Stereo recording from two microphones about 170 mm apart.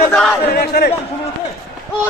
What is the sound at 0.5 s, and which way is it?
Speech, 70° left (ahead or behind).